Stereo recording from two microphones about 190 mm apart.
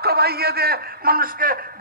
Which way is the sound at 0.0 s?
55° right (ahead or behind).